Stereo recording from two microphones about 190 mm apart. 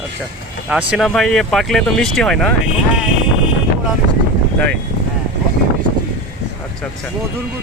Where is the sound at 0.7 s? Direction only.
5° right (ahead or behind).